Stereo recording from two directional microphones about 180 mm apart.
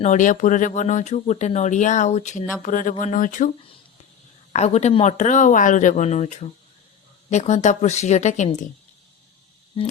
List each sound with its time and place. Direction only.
0.0 s speech: 45° left (ahead or behind)
4.5 s speech: 35° left (ahead or behind)